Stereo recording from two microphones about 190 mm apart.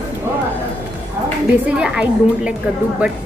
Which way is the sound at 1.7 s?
5° right (ahead or behind).